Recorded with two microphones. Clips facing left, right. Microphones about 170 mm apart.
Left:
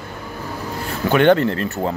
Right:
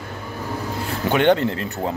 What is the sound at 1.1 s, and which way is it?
Speech, 20° right (ahead or behind).